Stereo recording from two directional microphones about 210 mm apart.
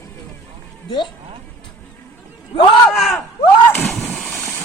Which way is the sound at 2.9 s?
Centre (ahead or behind).